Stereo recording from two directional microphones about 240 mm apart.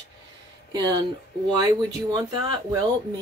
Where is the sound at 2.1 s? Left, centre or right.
Centre.